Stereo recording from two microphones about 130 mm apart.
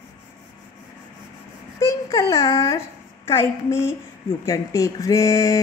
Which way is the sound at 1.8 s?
25° left (ahead or behind).